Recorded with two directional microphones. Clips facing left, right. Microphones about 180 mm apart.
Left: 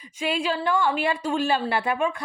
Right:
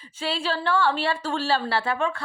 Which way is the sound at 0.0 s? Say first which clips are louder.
Left 2 dB; 15° left (ahead or behind).